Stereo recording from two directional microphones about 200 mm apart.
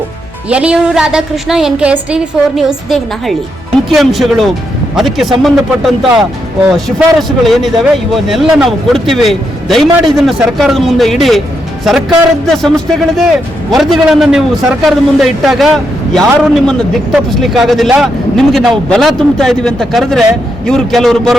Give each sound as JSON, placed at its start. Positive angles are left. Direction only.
{"t": 0.5, "sound": "a man's voice", "side_deg": -5}